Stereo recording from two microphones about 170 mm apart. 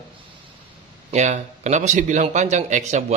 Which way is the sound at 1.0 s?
45° right (ahead or behind).